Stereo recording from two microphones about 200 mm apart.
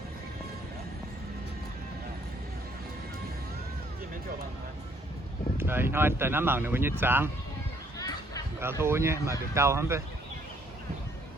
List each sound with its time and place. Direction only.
5.5 s speech: 10° right (ahead or behind)
7.9 s music: 15° left (ahead or behind)
8.6 s speech: 10° right (ahead or behind)